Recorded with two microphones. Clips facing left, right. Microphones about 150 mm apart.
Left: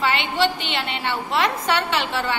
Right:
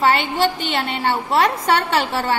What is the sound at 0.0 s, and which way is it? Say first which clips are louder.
A woman's voice: right 4 dB; 40° right (ahead or behind).